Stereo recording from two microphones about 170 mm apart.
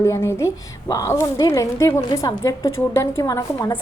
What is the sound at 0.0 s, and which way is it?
A woman's voice, 15° left (ahead or behind).